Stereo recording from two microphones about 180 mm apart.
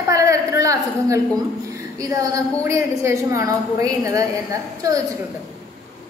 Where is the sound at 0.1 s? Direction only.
20° right (ahead or behind).